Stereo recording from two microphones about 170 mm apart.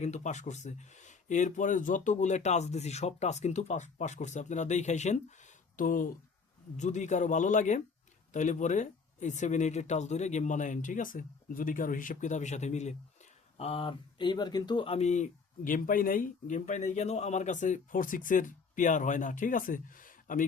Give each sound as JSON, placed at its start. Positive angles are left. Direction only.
{"t": 0.0, "sound": "speech", "side_deg": 45}
{"t": 5.7, "sound": "speech", "side_deg": 55}